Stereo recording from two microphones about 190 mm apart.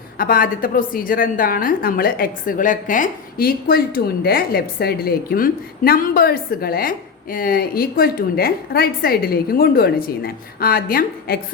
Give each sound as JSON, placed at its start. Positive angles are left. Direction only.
{"t": 0.2, "sound": "a woman's voice", "side_deg": 50}